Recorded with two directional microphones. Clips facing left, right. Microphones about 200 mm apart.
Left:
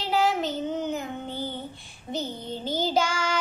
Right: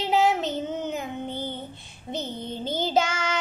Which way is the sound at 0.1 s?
20° right (ahead or behind).